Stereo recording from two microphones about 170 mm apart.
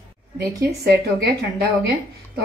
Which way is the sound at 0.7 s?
70° right (ahead or behind).